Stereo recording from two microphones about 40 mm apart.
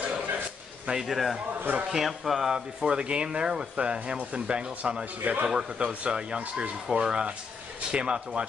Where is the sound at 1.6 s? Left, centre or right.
Right.